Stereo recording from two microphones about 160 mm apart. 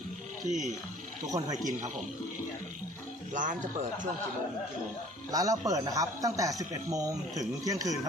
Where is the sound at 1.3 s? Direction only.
20° right (ahead or behind).